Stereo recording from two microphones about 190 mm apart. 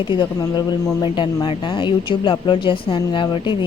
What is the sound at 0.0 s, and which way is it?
Speech, 25° left (ahead or behind).